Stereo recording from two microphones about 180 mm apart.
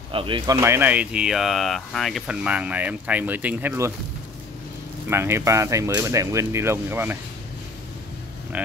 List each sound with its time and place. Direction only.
0.1 s speech: 30° right (ahead or behind)
0.6 s speech: 15° right (ahead or behind)
5.1 s speech: 15° right (ahead or behind)
8.6 s speech: 10° right (ahead or behind)